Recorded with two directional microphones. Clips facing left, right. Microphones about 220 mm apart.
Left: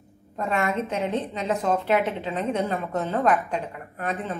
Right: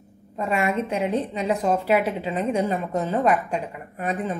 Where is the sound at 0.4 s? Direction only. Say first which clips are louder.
Right 2 dB; 10° right (ahead or behind).